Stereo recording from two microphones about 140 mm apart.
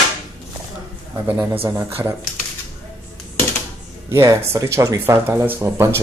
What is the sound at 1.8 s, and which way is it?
Speech, 15° right (ahead or behind).